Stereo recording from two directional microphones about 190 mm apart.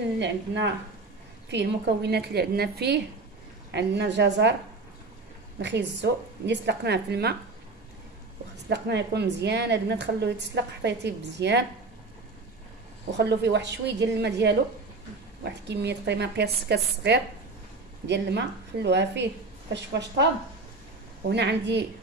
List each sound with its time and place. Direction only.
1.5 s a woman's voice: 65° right (ahead or behind)
5.6 s a woman's voice: 65° right (ahead or behind)
8.6 s a woman's voice: 65° right (ahead or behind)
13.1 s a woman's voice: 65° right (ahead or behind)
21.3 s a woman's voice: 65° right (ahead or behind)